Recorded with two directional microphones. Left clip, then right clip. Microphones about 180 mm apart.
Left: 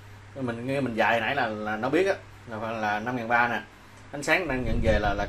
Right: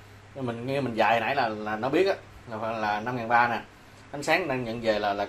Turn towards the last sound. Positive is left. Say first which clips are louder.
# even
turn(degrees=5)  # may be behind; listen again after turning